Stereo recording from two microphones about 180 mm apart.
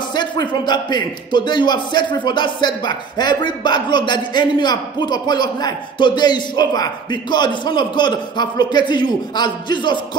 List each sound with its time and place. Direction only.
0.1 s speech: 25° left (ahead or behind)